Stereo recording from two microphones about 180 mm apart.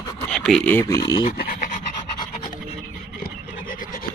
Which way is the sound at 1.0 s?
25° left (ahead or behind).